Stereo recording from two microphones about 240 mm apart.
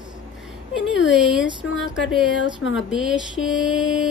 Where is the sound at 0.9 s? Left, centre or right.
Left.